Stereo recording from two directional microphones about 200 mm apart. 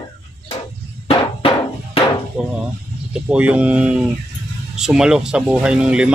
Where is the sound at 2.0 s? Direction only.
30° left (ahead or behind).